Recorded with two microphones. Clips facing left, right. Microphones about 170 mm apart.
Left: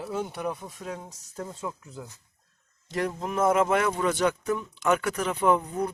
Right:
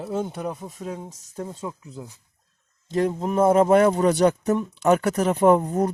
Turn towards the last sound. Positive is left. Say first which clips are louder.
# right 6 dB
turn(degrees=-45)  # may be behind; listen again after turning